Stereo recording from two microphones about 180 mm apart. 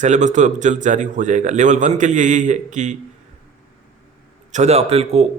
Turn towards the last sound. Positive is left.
turn(degrees=-35)  # may be behind; listen again after turning